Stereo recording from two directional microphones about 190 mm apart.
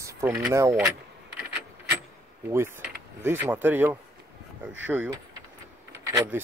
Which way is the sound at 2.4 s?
15° right (ahead or behind).